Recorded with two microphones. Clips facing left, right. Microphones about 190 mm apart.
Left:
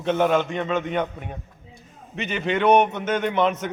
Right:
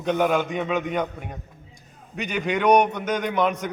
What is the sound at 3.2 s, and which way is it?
Speech, 5° left (ahead or behind).